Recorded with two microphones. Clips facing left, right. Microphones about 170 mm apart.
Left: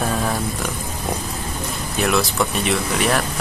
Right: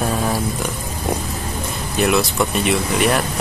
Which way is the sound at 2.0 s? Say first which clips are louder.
Right 2 dB; centre (ahead or behind).